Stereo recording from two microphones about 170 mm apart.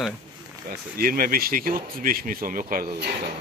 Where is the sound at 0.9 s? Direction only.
60° right (ahead or behind).